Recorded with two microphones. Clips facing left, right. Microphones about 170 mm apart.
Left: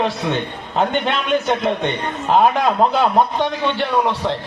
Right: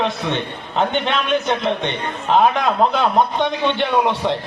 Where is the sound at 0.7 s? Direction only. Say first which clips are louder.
Even; 5° left (ahead or behind).